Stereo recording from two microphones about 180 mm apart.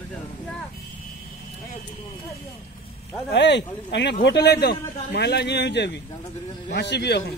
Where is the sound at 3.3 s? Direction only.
75° left (ahead or behind).